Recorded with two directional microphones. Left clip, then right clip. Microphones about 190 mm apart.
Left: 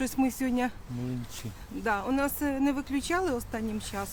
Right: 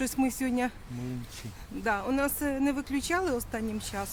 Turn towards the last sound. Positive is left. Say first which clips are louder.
# even
turn(degrees=-5)  # may be behind; listen again after turning